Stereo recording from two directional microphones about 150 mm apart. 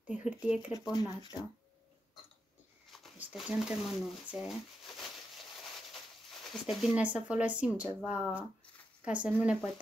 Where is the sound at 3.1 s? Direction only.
5° right (ahead or behind).